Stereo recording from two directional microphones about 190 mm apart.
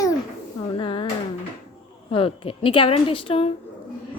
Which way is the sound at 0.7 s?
25° left (ahead or behind).